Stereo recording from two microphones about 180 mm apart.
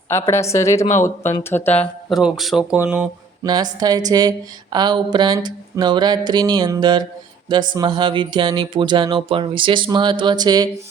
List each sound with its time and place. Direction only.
0.1 s a woman's voice: 15° left (ahead or behind); by 3.1 s 10° right (ahead or behind)
3.4 s speech: 20° right (ahead or behind)